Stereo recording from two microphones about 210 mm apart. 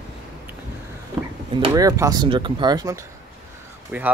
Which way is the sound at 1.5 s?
20° right (ahead or behind).